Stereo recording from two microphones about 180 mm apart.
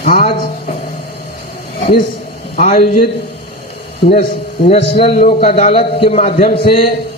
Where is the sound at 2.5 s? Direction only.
40° left (ahead or behind).